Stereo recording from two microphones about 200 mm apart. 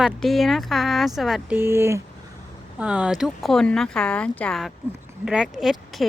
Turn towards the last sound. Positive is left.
turn(degrees=0)  # may be behind; listen again after turning